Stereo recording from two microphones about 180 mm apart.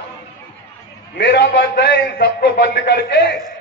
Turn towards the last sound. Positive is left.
turn(degrees=65)  # may be behind; listen again after turning